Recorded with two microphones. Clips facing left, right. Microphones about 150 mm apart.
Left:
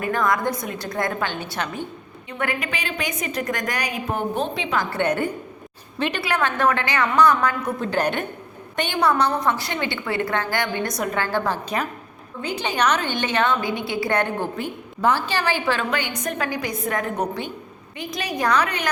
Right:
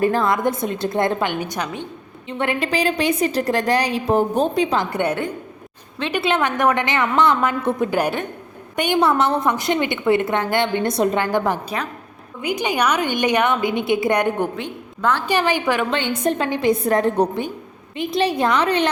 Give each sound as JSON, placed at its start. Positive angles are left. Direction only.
{"t": 0.0, "sound": "a woman's voice", "side_deg": -30}
{"t": 2.4, "sound": "a woman's voice", "side_deg": -30}
{"t": 4.8, "sound": "a woman's voice", "side_deg": -15}
{"t": 6.2, "sound": "a woman's voice", "side_deg": -20}
{"t": 7.8, "sound": "a woman's voice", "side_deg": -10}
{"t": 9.0, "sound": "a woman's voice", "side_deg": -20}
{"t": 14.5, "sound": "a woman's voice", "side_deg": 5}
{"t": 15.3, "sound": "a woman's voice", "side_deg": -15}
{"t": 15.9, "sound": "a woman's voice", "side_deg": -25}